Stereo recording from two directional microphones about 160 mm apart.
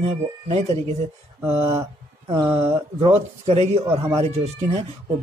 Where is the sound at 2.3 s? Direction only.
20° right (ahead or behind).